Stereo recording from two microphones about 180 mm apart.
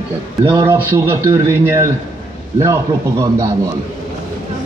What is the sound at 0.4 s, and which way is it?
Speech, 20° right (ahead or behind).